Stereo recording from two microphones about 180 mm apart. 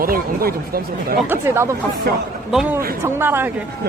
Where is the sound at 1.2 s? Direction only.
15° right (ahead or behind).